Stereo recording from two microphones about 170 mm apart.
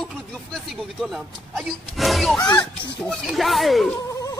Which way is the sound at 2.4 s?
20° left (ahead or behind).